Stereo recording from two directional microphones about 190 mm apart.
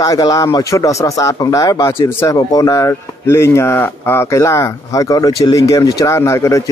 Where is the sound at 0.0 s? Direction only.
20° left (ahead or behind).